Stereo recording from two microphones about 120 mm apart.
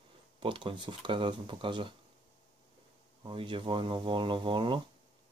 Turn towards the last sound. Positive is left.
turn(degrees=-45)  # may be behind; listen again after turning